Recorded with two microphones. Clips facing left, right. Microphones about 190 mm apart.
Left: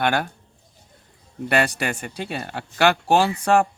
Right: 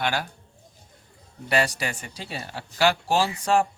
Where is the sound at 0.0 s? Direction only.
55° left (ahead or behind).